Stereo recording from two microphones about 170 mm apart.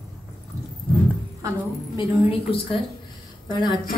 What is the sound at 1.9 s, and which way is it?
A woman's voice, 30° left (ahead or behind).